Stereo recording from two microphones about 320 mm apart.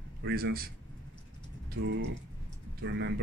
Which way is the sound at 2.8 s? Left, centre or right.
Right.